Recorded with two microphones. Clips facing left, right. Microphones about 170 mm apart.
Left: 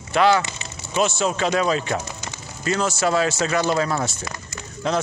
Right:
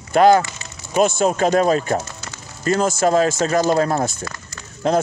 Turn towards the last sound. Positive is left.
turn(degrees=-45)  # may be behind; listen again after turning